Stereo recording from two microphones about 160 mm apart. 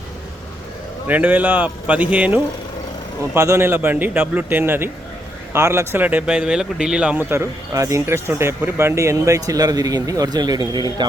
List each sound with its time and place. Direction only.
1.0 s speech: 10° right (ahead or behind); by 11.0 s 25° right (ahead or behind)